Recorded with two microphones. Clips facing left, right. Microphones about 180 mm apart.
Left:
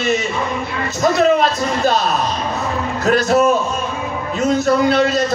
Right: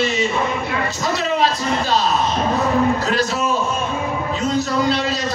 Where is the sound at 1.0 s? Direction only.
50° left (ahead or behind).